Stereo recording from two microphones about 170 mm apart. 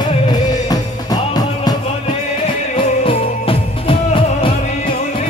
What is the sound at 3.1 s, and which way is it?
Music, 30° left (ahead or behind).